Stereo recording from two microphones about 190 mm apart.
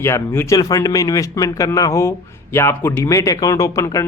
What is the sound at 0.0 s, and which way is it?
Speech, 15° left (ahead or behind).